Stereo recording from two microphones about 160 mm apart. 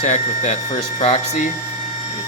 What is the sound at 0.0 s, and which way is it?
Speech, 45° left (ahead or behind).